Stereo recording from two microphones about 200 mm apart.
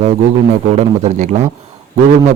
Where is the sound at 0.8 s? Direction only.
35° right (ahead or behind).